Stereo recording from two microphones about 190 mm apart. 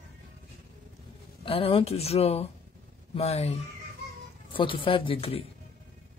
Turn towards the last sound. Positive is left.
turn(degrees=30)  # may be behind; listen again after turning